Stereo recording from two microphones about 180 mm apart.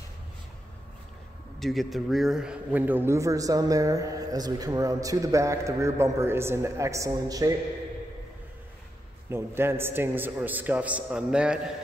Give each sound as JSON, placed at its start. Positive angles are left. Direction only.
{"t": 1.6, "sound": "a man's voice", "side_deg": 0}
{"t": 9.3, "sound": "a man's voice", "side_deg": -15}